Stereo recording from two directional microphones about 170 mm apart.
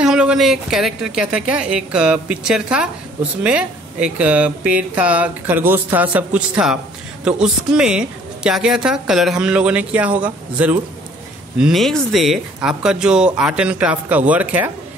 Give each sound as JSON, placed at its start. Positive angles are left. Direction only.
{"t": 0.0, "sound": "speech", "side_deg": -5}